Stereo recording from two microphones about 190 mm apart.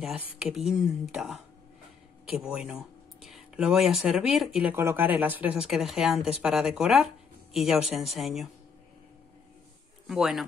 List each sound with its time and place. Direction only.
0.0 s speech: centre (ahead or behind)
10.0 s speech: centre (ahead or behind)